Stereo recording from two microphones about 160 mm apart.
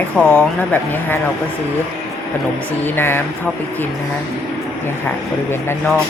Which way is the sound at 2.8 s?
15° left (ahead or behind).